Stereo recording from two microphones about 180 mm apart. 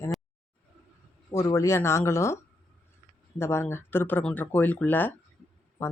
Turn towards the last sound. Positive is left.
turn(degrees=15)  # may be behind; listen again after turning